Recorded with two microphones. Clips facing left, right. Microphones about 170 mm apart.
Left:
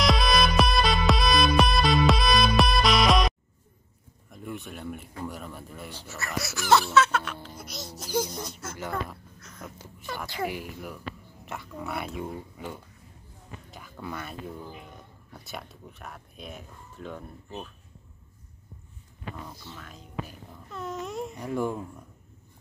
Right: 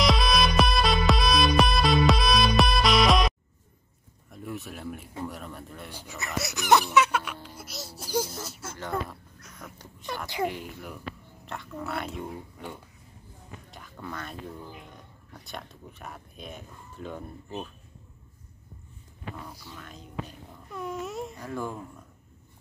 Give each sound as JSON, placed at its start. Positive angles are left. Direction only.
{"t": 0.0, "sound": "music", "side_deg": 0}
{"t": 4.3, "sound": "a sound", "side_deg": 0}
{"t": 5.9, "sound": "dog", "side_deg": -15}
{"t": 6.4, "sound": "music", "side_deg": -20}
{"t": 8.0, "sound": "a sound", "side_deg": -10}
{"t": 8.7, "sound": "a sound", "side_deg": 10}
{"t": 10.4, "sound": "speech", "side_deg": 5}
{"t": 19.5, "sound": "speech", "side_deg": -10}
{"t": 19.8, "sound": "speech", "side_deg": 0}
{"t": 20.7, "sound": "speech", "side_deg": -10}
{"t": 21.4, "sound": "speech", "side_deg": 15}